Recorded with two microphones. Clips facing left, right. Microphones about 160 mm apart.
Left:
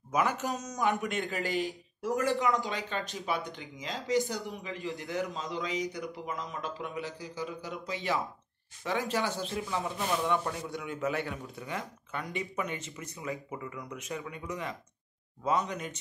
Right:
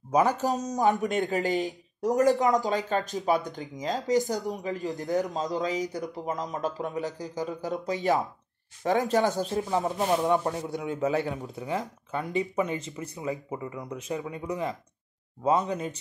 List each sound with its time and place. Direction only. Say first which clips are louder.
0.1 s speech: right 6 dB; 35° right (ahead or behind)